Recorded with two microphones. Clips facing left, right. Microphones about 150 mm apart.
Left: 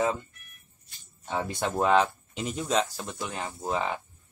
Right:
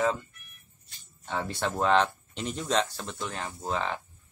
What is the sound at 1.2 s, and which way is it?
Speech, 15° left (ahead or behind).